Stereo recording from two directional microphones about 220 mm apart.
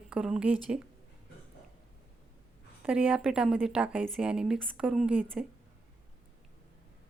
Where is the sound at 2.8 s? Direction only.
5° right (ahead or behind).